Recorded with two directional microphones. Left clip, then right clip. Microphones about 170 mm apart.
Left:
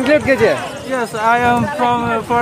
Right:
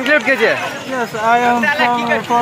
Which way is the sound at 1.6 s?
25° left (ahead or behind).